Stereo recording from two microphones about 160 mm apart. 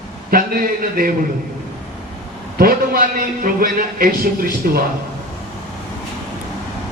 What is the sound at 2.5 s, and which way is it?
A man's voice, 65° right (ahead or behind).